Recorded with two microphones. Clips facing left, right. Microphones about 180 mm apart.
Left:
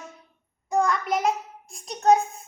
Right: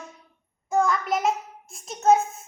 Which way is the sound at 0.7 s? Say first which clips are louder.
Even; centre (ahead or behind).